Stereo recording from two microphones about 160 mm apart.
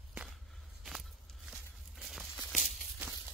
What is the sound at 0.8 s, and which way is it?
Walk, centre (ahead or behind).